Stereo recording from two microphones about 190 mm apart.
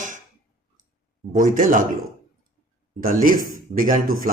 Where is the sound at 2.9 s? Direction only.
45° right (ahead or behind).